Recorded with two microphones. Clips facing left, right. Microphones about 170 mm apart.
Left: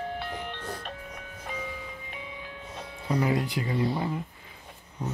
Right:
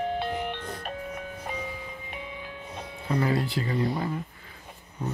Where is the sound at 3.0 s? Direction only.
15° left (ahead or behind).